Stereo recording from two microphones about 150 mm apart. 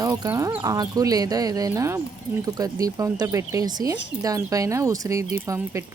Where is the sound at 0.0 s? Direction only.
20° right (ahead or behind).